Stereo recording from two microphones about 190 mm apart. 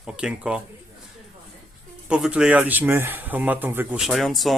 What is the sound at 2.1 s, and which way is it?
A man's voice, 5° right (ahead or behind).